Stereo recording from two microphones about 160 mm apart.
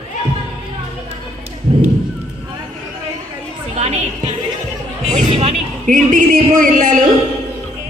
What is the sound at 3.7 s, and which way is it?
Music, 40° right (ahead or behind).